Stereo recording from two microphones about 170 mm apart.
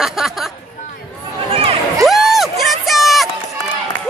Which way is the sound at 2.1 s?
Centre (ahead or behind).